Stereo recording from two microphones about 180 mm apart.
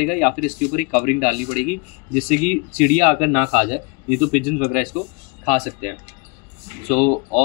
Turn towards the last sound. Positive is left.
turn(degrees=45)  # may be behind; listen again after turning